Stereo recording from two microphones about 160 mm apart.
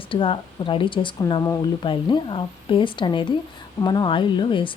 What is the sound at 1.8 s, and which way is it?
A woman's voice, 30° left (ahead or behind).